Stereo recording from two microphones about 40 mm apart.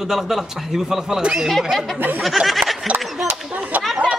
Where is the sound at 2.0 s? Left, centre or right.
Right.